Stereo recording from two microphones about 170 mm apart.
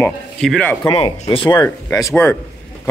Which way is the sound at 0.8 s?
30° left (ahead or behind).